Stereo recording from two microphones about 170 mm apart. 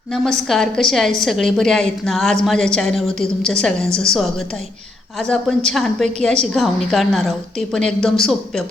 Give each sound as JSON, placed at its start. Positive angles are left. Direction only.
{"t": 0.1, "sound": "a woman's voice", "side_deg": 0}